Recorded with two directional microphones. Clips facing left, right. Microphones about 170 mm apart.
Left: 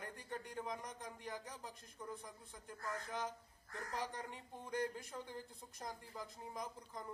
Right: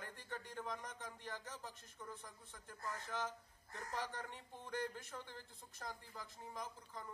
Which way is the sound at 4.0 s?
15° left (ahead or behind).